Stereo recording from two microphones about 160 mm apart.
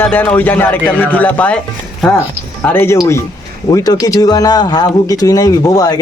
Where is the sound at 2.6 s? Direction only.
15° left (ahead or behind).